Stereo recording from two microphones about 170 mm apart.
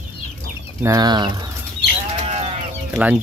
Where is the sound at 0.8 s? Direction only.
20° right (ahead or behind).